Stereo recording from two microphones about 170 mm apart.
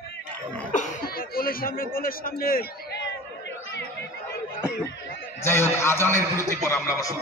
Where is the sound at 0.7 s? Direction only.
55° left (ahead or behind).